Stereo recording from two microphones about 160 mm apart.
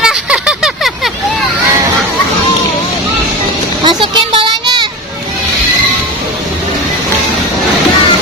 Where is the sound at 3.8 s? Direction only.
30° right (ahead or behind).